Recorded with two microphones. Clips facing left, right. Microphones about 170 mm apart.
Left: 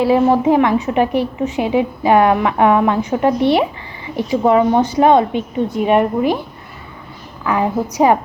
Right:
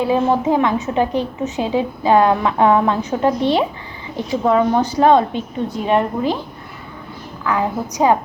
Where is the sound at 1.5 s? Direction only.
15° left (ahead or behind).